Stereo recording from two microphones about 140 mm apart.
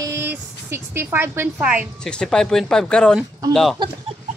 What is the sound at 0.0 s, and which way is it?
A woman's voice, 20° right (ahead or behind).